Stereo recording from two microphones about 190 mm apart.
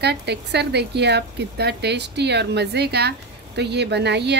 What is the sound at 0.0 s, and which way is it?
A woman's voice, 60° right (ahead or behind).